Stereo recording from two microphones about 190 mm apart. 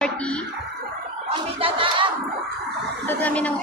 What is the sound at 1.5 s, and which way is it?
Battle cry, 30° right (ahead or behind).